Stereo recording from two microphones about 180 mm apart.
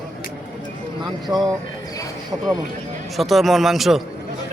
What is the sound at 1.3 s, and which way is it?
Speech, 20° right (ahead or behind).